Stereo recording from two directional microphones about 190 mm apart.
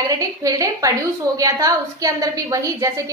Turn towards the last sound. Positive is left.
turn(degrees=-15)  # may be behind; listen again after turning